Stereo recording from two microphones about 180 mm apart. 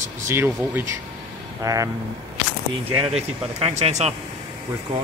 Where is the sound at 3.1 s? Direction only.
35° right (ahead or behind).